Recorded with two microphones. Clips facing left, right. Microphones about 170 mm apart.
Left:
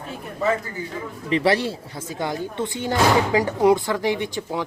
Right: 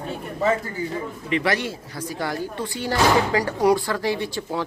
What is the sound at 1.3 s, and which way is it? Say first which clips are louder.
Speech: left 4 dB; 30° left (ahead or behind).